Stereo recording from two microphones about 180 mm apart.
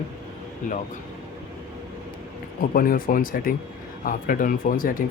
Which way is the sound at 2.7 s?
55° left (ahead or behind).